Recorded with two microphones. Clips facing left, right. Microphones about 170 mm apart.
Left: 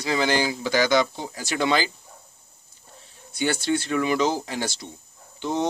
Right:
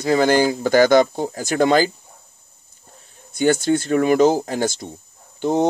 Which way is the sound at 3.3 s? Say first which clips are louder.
Right 7 dB; 45° right (ahead or behind).